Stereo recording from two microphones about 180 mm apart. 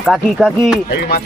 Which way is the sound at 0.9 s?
65° left (ahead or behind).